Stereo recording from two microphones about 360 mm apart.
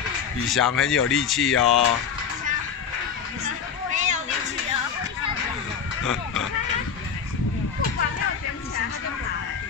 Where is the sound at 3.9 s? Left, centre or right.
Centre.